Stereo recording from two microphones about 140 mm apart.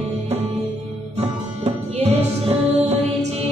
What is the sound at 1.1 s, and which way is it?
Music, 50° right (ahead or behind).